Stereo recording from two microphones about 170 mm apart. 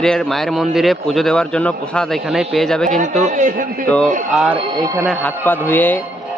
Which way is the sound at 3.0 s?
45° right (ahead or behind).